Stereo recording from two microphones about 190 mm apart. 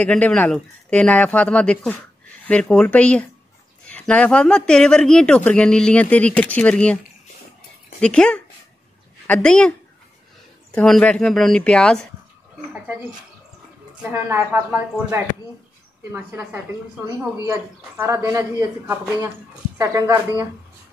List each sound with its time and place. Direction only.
0.0 s speech: 10° left (ahead or behind)
8.0 s speech: 5° left (ahead or behind)
14.1 s a woman's voice: 10° right (ahead or behind)